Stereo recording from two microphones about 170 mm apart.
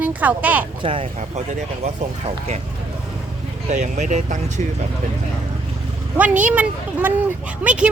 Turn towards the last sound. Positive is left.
turn(degrees=-5)  # may be behind; listen again after turning